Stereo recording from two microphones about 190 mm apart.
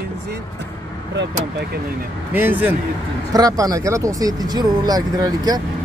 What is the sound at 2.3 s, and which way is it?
A woman's voice, 10° right (ahead or behind).